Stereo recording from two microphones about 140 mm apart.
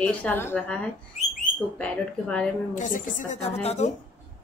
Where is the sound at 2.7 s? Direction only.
65° left (ahead or behind).